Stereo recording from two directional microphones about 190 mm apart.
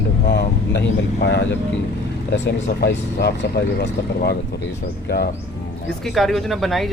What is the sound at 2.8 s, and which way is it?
Speech, 60° left (ahead or behind).